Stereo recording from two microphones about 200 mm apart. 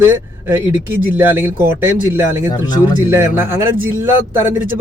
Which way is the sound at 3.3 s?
10° right (ahead or behind).